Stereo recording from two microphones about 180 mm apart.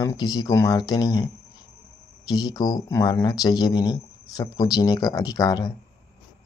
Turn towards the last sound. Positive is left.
turn(degrees=20)  # may be behind; listen again after turning